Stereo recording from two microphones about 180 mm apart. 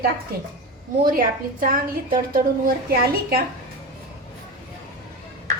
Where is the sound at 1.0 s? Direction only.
50° right (ahead or behind).